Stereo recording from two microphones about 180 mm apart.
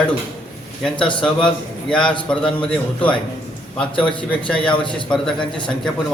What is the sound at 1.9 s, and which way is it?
Speech, 5° left (ahead or behind).